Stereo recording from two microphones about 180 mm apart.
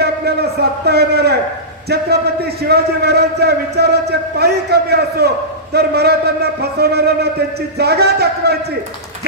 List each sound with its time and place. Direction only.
0.0 s a man's voice: 65° right (ahead or behind)
2.7 s a man's voice: 65° right (ahead or behind)